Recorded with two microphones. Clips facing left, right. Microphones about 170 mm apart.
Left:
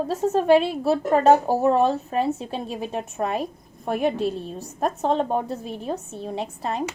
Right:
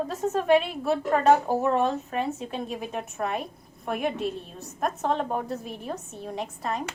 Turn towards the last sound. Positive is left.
turn(degrees=30)  # may be behind; listen again after turning